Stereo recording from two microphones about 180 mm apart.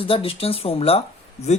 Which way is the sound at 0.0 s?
30° left (ahead or behind).